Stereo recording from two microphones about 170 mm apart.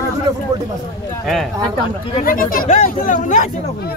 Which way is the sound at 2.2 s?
55° left (ahead or behind).